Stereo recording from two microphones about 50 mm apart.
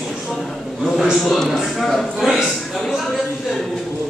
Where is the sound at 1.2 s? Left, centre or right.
Centre.